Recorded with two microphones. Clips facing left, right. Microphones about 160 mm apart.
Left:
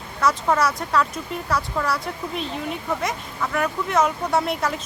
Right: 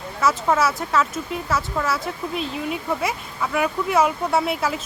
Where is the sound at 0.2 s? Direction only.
5° right (ahead or behind).